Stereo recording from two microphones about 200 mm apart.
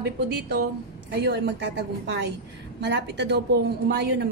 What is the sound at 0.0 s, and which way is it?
A woman's voice, 55° right (ahead or behind).